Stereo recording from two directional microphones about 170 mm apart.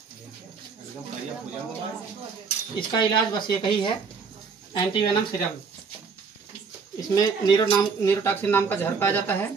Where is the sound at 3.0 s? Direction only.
25° left (ahead or behind).